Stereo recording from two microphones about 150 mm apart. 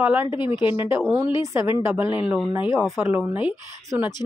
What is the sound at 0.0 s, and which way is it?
Speech, 10° right (ahead or behind).